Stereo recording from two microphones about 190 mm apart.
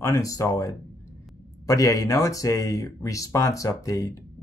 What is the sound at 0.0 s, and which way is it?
Speech, 15° left (ahead or behind).